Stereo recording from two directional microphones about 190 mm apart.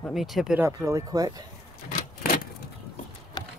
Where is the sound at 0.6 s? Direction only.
15° right (ahead or behind).